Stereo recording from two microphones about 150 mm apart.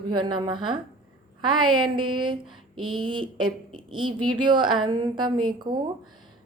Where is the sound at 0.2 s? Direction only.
30° right (ahead or behind).